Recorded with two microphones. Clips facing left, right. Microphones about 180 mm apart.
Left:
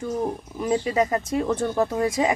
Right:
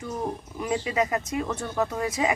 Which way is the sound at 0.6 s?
35° left (ahead or behind).